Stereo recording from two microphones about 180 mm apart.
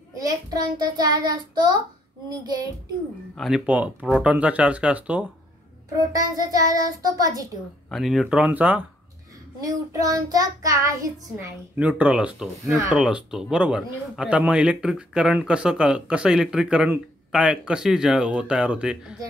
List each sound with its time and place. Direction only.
0.1 s child singing: 20° right (ahead or behind)
3.3 s child singing: centre (ahead or behind)
5.9 s child singing: 20° right (ahead or behind)
7.9 s a man's voice: centre (ahead or behind)
9.7 s child singing: 20° right (ahead or behind); by 12.8 s 5° right (ahead or behind)
12.8 s a man's voice: 5° right (ahead or behind)